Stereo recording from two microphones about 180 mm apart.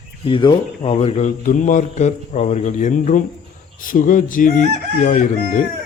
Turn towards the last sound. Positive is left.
turn(degrees=45)  # may be behind; listen again after turning